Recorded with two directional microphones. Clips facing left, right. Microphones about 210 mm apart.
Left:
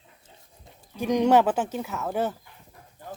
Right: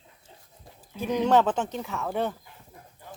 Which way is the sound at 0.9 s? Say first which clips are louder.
Left 2 dB; 15° left (ahead or behind).